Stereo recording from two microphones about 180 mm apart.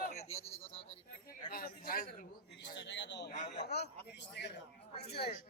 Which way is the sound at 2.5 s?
75° left (ahead or behind).